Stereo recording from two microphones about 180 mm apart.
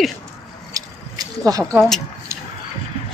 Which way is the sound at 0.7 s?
20° right (ahead or behind).